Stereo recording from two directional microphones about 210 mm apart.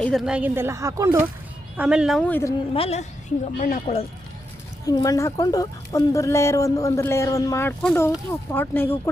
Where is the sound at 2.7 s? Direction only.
30° left (ahead or behind).